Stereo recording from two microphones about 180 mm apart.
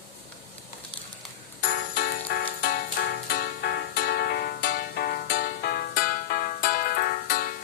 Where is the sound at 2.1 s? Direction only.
70° left (ahead or behind).